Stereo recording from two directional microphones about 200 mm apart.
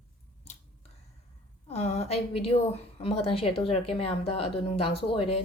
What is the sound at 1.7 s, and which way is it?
A woman's voice, 30° left (ahead or behind).